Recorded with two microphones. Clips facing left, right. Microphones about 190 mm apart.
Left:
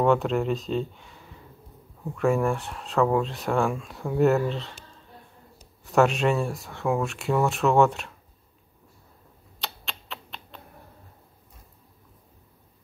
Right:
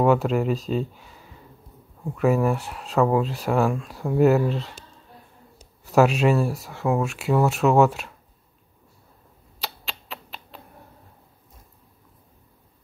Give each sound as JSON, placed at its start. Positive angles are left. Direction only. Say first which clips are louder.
{"t": 0.0, "sound": "speech", "louder": "right 2 dB", "side_deg": -5}
{"t": 5.9, "sound": "speech", "louder": "right 3 dB", "side_deg": -5}
{"t": 9.6, "sound": "a sound", "louder": "right 2 dB", "side_deg": -5}